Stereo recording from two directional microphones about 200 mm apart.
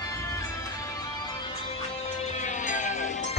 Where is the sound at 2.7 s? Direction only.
40° left (ahead or behind).